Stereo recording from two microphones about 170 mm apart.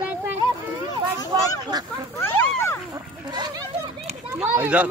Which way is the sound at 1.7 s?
25° right (ahead or behind).